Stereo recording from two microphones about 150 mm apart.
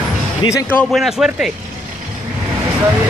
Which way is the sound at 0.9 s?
Centre (ahead or behind).